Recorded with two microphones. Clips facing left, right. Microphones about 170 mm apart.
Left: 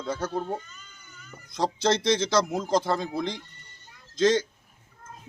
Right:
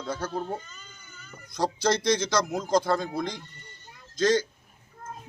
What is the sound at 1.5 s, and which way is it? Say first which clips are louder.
Speech: left 1 dB; 25° left (ahead or behind).